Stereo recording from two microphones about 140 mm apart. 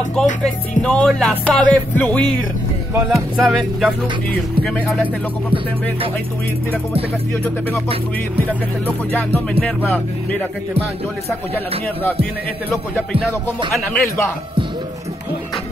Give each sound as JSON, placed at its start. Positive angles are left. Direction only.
{"t": 0.1, "sound": "music", "side_deg": 5}
{"t": 3.1, "sound": "music", "side_deg": 0}
{"t": 9.1, "sound": "music", "side_deg": 10}
{"t": 14.0, "sound": "a man's voice", "side_deg": 20}